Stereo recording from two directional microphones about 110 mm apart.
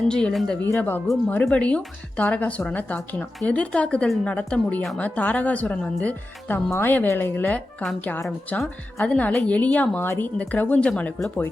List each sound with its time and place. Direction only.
0.1 s speech: 10° left (ahead or behind)